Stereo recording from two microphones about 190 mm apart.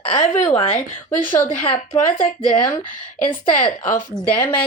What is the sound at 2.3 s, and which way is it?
Speech, 25° left (ahead or behind).